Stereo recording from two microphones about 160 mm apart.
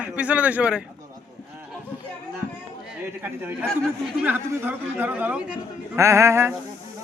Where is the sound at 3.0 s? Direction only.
15° right (ahead or behind).